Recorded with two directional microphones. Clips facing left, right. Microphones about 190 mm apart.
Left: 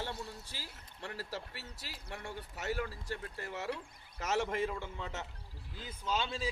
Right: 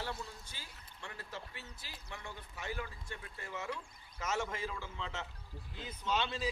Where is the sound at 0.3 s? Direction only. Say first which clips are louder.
Left 4 dB; 70° left (ahead or behind).